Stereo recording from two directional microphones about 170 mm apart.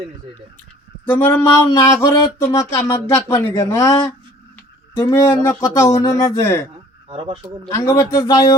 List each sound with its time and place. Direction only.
1.0 s speech: 10° left (ahead or behind)
7.1 s speech: 30° right (ahead or behind)
7.7 s speech: 20° left (ahead or behind)